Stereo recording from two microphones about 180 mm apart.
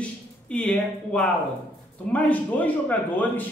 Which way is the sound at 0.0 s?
5° left (ahead or behind).